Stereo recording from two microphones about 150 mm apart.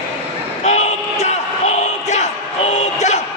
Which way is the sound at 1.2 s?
50° left (ahead or behind).